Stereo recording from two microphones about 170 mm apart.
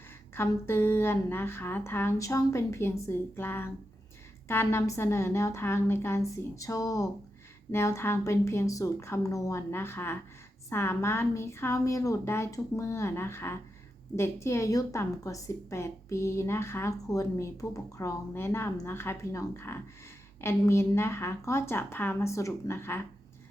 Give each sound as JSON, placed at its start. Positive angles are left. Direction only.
{"t": 0.3, "sound": "a woman's voice", "side_deg": 15}